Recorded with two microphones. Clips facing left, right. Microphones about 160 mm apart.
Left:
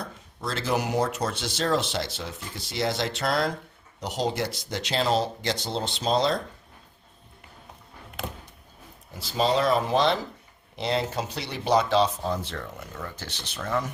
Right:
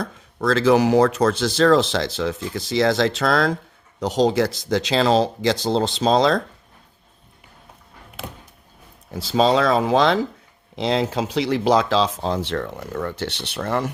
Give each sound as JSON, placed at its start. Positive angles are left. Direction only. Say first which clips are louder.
{"t": 0.0, "sound": "speech", "louder": "right 10 dB", "side_deg": -90}
{"t": 9.1, "sound": "speech", "louder": "right 6 dB", "side_deg": -90}